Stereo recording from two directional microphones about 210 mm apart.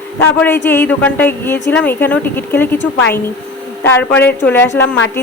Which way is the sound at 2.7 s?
60° left (ahead or behind).